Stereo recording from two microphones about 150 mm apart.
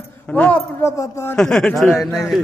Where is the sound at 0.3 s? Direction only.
10° left (ahead or behind).